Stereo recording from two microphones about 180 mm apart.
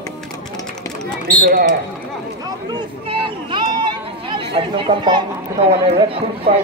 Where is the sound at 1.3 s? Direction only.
65° right (ahead or behind).